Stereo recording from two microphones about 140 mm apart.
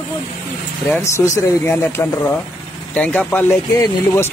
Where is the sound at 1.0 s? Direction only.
20° left (ahead or behind).